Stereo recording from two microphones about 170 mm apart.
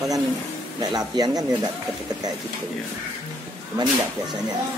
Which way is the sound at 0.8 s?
25° right (ahead or behind).